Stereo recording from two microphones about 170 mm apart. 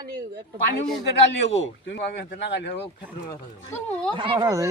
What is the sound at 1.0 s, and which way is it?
Speech, 90° left.